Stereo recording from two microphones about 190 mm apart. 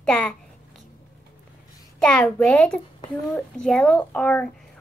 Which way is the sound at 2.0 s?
5° left (ahead or behind).